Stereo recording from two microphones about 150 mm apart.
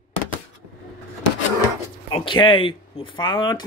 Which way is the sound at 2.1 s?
35° left (ahead or behind).